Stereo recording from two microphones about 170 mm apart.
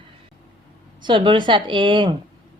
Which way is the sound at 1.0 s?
30° right (ahead or behind).